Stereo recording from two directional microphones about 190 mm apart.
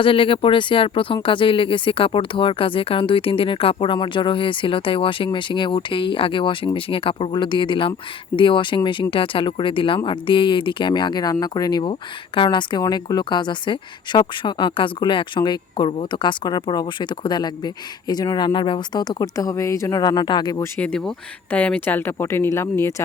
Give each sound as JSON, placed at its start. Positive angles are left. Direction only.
{"t": 0.0, "sound": "speech", "side_deg": 30}